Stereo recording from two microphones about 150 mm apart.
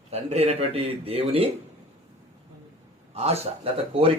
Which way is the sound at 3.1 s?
45° right (ahead or behind).